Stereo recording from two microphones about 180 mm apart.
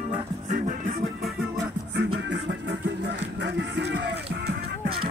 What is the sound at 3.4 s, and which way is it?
Music, 75° right (ahead or behind).